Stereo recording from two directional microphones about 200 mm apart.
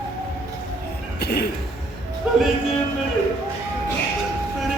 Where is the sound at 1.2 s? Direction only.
55° left (ahead or behind).